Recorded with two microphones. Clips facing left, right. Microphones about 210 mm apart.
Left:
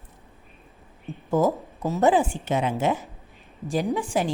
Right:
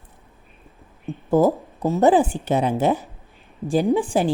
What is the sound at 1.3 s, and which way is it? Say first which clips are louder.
A woman's voice: right 5 dB; 35° right (ahead or behind).